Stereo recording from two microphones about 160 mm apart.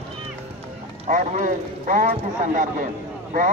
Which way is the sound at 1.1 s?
55° right (ahead or behind).